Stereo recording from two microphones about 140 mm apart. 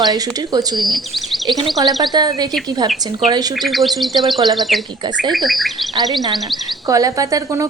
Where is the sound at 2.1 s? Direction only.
30° right (ahead or behind).